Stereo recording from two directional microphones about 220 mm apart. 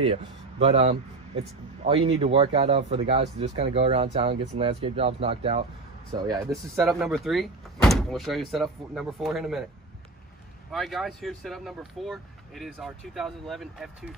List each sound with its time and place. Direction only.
0.0 s speech: 25° right (ahead or behind)
6.8 s speech: centre (ahead or behind)
10.7 s speech: centre (ahead or behind)